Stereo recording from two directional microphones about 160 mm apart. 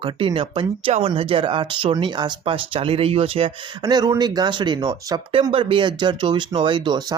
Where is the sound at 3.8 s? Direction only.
20° right (ahead or behind).